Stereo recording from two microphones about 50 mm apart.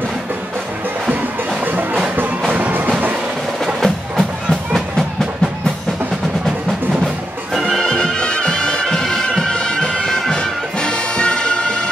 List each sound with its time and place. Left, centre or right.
1.6 s music: right
2.4 s music: right
3.8 s music: centre
7.5 s music: centre
7.8 s bagpipes: centre
10.3 s music: centre